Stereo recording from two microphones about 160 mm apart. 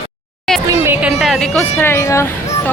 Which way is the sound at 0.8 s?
10° right (ahead or behind).